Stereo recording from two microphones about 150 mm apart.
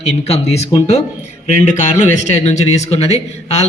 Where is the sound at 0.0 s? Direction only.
45° left (ahead or behind).